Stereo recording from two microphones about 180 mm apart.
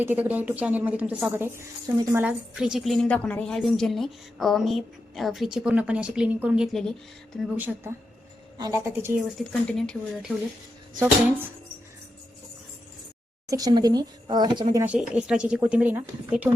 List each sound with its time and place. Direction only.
0.0 s a woman's voice: 10° right (ahead or behind)
2.2 s a woman's voice: 5° right (ahead or behind)
9.4 s a woman's voice: 5° left (ahead or behind)
11.0 s a woman's voice: 10° right (ahead or behind)
13.5 s a woman's voice: 20° right (ahead or behind)
14.8 s a woman's voice: 5° right (ahead or behind)